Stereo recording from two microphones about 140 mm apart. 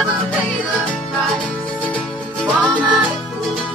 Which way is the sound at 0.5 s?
5° left (ahead or behind).